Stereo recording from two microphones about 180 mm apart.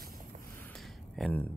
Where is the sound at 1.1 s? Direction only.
Centre (ahead or behind).